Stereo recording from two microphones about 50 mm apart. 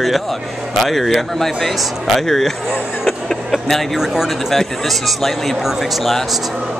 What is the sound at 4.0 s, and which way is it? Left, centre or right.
Speech, centre.